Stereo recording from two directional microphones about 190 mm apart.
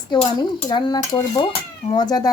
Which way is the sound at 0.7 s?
25° left (ahead or behind).